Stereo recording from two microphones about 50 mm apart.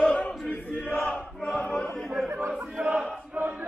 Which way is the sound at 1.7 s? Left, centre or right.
Centre.